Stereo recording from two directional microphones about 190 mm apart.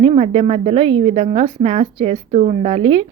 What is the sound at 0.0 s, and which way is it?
A woman's voice, 30° right (ahead or behind).